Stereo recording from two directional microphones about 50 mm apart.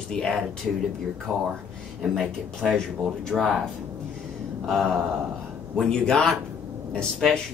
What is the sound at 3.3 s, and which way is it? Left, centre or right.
Speech, centre.